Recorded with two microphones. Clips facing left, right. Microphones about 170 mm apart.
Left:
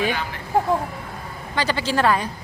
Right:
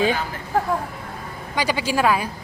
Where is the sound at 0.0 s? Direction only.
35° right (ahead or behind).